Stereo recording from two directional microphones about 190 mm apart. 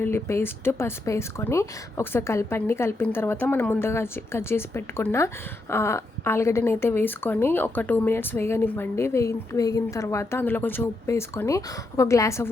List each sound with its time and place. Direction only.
0.0 s a woman's voice: 15° left (ahead or behind)